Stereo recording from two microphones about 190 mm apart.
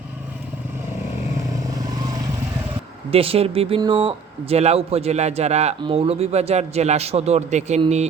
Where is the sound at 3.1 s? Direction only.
30° right (ahead or behind).